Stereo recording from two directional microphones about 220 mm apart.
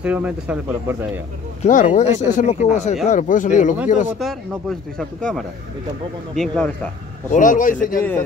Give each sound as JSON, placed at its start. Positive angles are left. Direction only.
{"t": 0.0, "sound": "speech", "side_deg": -5}
{"t": 1.6, "sound": "speech", "side_deg": 35}
{"t": 4.2, "sound": "speech", "side_deg": 0}
{"t": 7.2, "sound": "speech", "side_deg": 35}